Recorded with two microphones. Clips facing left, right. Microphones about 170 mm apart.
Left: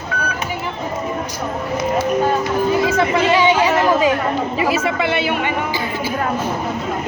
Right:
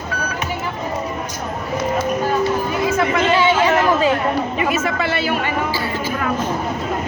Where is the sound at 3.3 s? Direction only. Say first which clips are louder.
Even; 15° left (ahead or behind).